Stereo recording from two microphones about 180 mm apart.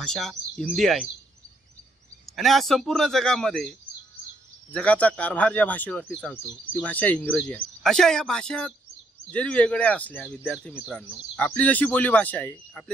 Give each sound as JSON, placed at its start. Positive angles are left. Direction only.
{"t": 0.0, "sound": "speech", "side_deg": 0}
{"t": 2.2, "sound": "speech", "side_deg": 0}
{"t": 4.7, "sound": "speech", "side_deg": 5}